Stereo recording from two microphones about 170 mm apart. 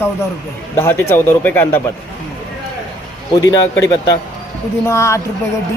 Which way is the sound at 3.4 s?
20° left (ahead or behind).